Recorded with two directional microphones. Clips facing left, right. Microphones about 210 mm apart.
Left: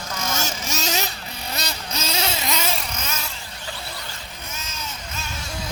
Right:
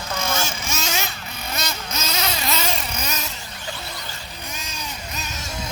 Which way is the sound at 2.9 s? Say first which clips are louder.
Right 2 dB; 15° right (ahead or behind).